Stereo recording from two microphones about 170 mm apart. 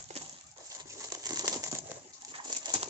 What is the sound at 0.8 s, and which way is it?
Crumpling, 20° right (ahead or behind).